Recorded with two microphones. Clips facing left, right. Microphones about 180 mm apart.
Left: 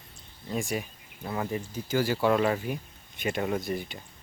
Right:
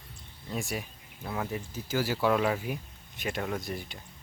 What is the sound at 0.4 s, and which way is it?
Speech, centre (ahead or behind).